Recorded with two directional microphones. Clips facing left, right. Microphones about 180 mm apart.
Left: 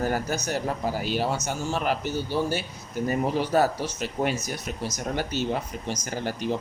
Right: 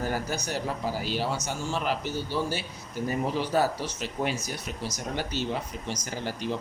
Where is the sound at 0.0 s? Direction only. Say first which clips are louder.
Left 4 dB; 50° left (ahead or behind).